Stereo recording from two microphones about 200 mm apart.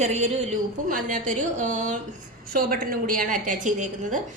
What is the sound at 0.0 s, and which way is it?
A woman's voice, 35° right (ahead or behind).